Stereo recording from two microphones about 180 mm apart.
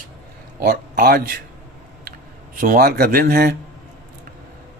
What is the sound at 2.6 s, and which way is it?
Speech, 50° right (ahead or behind).